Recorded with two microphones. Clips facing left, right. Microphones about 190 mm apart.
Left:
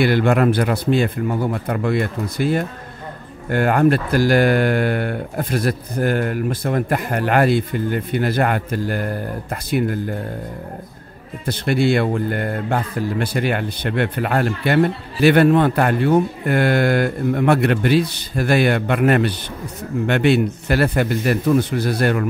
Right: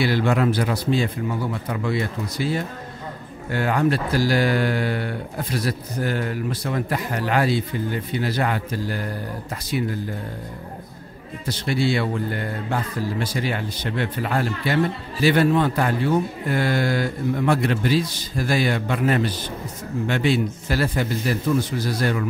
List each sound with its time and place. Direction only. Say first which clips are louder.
0.0 s a man's voice: left 4 dB; 55° left (ahead or behind)
11.4 s a man's voice: left 5 dB; 55° left (ahead or behind)